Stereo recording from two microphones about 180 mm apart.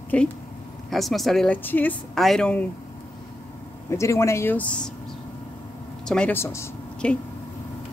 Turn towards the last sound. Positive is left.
turn(degrees=10)  # may be behind; listen again after turning